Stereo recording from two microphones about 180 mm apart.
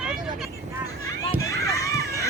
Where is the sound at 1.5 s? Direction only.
20° left (ahead or behind).